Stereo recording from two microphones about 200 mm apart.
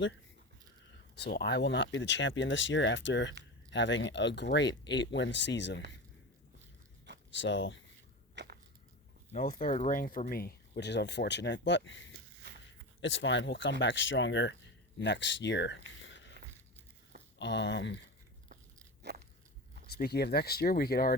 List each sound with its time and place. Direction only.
1.1 s speech: 55° left (ahead or behind)
7.3 s speech: 65° left (ahead or behind)
8.4 s a sound: 60° right (ahead or behind)
9.3 s speech: 40° left (ahead or behind); by 15.8 s 60° left (ahead or behind)
16.0 s a sound: 70° left (ahead or behind)
17.3 s speech: 60° left (ahead or behind)
19.1 s crunch: 55° right (ahead or behind)
19.9 s speech: 50° left (ahead or behind)